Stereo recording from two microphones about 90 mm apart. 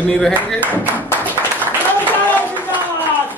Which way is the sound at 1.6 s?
20° left (ahead or behind).